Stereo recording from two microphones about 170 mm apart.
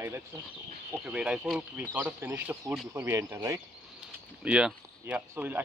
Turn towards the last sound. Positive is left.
turn(degrees=-10)  # may be behind; listen again after turning